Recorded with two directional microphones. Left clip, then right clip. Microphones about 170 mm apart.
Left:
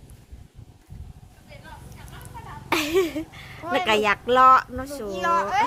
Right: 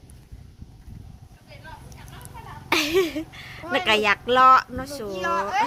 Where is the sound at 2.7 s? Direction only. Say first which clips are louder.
Right 1 dB; centre (ahead or behind).